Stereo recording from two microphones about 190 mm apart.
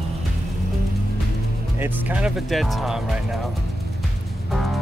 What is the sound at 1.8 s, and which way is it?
Speech, 10° right (ahead or behind).